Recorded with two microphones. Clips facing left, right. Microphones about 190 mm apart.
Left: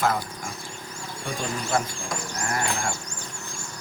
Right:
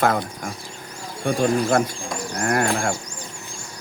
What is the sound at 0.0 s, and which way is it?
Speech, 55° right (ahead or behind).